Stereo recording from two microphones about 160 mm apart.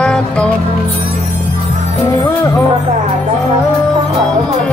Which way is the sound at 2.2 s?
20° left (ahead or behind).